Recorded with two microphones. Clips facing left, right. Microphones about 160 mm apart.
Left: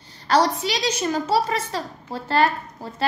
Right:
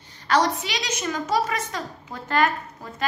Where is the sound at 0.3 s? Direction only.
35° left (ahead or behind).